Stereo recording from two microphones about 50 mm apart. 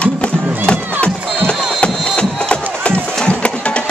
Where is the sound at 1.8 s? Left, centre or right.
Left.